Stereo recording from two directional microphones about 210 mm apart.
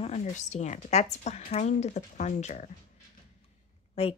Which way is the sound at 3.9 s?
25° left (ahead or behind).